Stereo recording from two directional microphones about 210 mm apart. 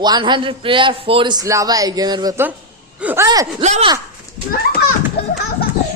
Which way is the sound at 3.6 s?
35° right (ahead or behind).